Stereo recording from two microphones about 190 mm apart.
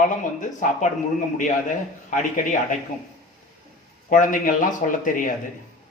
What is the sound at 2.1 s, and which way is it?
Speech, 40° left (ahead or behind).